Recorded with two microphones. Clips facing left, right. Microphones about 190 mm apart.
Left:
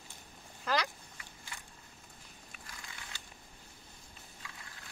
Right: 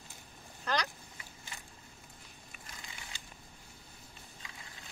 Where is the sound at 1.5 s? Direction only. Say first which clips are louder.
Even; 20° right (ahead or behind).